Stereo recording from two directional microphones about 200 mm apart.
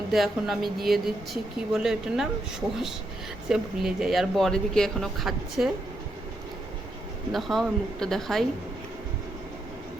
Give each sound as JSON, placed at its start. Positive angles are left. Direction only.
{"t": 0.1, "sound": "speech", "side_deg": 0}
{"t": 3.5, "sound": "speech", "side_deg": 0}
{"t": 7.3, "sound": "speech", "side_deg": 0}